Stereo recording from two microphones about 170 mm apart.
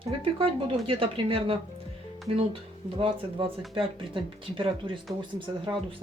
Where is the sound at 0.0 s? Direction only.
35° right (ahead or behind).